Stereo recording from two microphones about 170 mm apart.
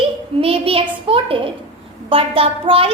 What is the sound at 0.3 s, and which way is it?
Child singing, 35° right (ahead or behind).